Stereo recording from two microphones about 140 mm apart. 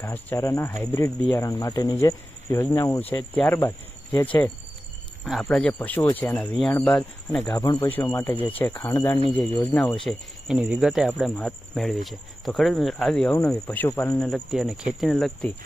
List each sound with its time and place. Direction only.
0.0 s speech: 15° left (ahead or behind)
5.2 s speech: 5° left (ahead or behind)
7.4 s speech: 30° left (ahead or behind)
7.9 s speech: 15° left (ahead or behind)
10.1 s speech: 5° right (ahead or behind)